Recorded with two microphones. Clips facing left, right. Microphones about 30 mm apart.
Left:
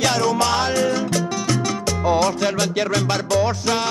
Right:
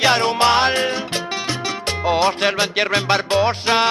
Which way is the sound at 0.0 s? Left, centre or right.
Right.